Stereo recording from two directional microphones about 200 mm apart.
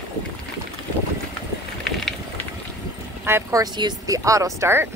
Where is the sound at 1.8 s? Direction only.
Centre (ahead or behind).